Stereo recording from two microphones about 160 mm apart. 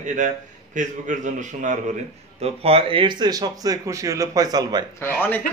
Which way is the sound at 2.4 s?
40° right (ahead or behind).